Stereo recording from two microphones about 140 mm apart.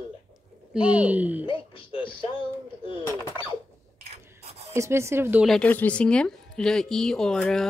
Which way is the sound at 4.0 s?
45° right (ahead or behind).